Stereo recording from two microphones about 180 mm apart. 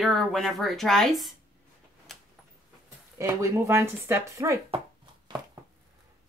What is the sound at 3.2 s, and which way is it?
Speech, 15° right (ahead or behind).